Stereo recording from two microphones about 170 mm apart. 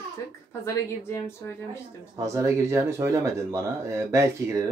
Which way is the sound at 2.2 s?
15° right (ahead or behind).